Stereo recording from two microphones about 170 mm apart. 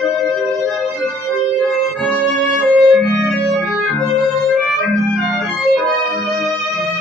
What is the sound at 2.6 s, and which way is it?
Music, centre (ahead or behind).